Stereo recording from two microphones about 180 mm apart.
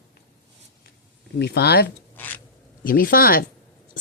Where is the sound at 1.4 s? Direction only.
65° left (ahead or behind).